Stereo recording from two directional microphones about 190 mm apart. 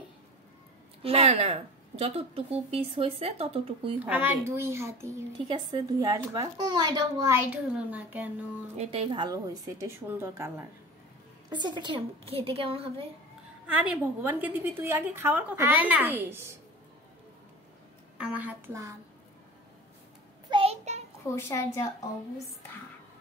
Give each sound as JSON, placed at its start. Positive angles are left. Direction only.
{"t": 1.0, "sound": "a woman's voice", "side_deg": -35}
{"t": 4.0, "sound": "a woman's voice", "side_deg": -10}
{"t": 8.7, "sound": "a woman's voice", "side_deg": -35}
{"t": 11.5, "sound": "a child's voice", "side_deg": -25}
{"t": 13.7, "sound": "a woman's voice", "side_deg": -10}
{"t": 18.1, "sound": "a woman's voice", "side_deg": -5}
{"t": 20.4, "sound": "child singing", "side_deg": -30}
{"t": 21.4, "sound": "a woman's voice", "side_deg": 15}